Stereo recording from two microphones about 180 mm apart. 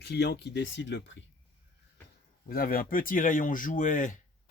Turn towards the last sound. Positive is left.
turn(degrees=45)  # may be behind; listen again after turning